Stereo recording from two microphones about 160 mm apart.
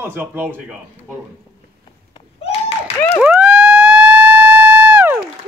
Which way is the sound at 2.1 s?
35° left (ahead or behind).